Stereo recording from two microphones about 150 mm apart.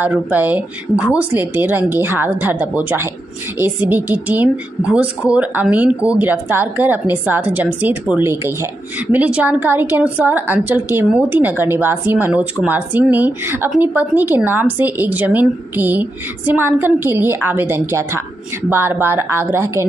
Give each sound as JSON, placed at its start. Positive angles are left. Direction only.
{"t": 0.0, "sound": "a woman's voice", "side_deg": -10}